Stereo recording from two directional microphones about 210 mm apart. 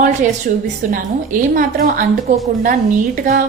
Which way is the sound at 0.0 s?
40° right (ahead or behind).